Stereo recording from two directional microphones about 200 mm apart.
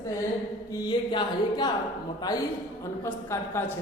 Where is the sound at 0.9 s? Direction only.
20° left (ahead or behind).